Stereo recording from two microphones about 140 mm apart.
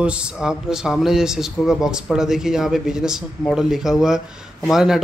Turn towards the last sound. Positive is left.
turn(degrees=0)  # may be behind; listen again after turning